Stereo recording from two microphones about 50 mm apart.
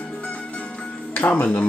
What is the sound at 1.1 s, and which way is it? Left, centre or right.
Speech, left.